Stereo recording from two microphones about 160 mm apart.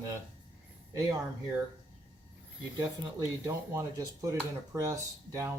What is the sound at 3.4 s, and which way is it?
Speech, 20° right (ahead or behind).